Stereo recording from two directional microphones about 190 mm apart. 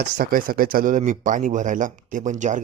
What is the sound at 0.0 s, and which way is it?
Speech, 55° right (ahead or behind).